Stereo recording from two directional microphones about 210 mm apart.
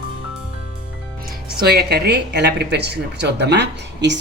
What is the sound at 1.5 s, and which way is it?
A woman's voice, 50° right (ahead or behind).